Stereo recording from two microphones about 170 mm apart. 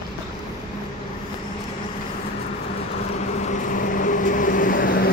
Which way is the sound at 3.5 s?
50° left (ahead or behind).